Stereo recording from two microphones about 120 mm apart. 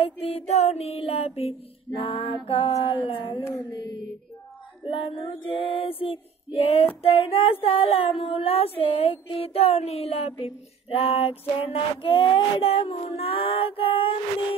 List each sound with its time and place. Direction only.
0.0 s mantra: 55° left (ahead or behind)
2.0 s child singing: 45° left (ahead or behind)
3.4 s music: 30° left (ahead or behind)
4.8 s child singing: 50° left (ahead or behind)